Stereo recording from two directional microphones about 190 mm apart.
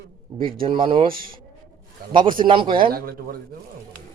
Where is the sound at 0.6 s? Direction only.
25° right (ahead or behind).